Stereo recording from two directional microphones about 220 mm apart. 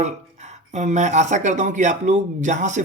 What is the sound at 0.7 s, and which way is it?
Speech, 30° right (ahead or behind).